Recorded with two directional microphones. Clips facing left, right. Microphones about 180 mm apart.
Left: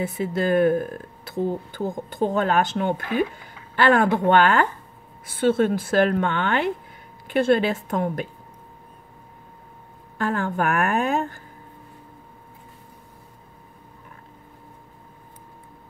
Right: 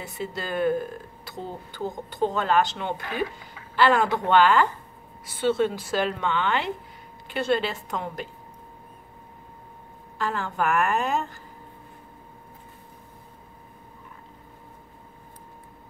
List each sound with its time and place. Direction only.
0.1 s speech: 55° left (ahead or behind)
10.1 s speech: 55° left (ahead or behind)